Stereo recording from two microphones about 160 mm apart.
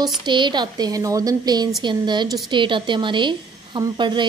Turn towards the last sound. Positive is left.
turn(degrees=-30)  # may be behind; listen again after turning